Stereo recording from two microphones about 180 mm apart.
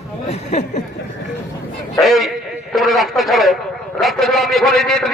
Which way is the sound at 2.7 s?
Centre (ahead or behind).